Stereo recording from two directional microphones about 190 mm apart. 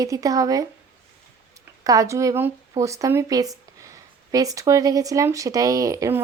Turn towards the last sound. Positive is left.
turn(degrees=-15)  # may be behind; listen again after turning